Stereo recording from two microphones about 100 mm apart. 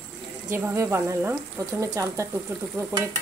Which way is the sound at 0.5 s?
25° right (ahead or behind).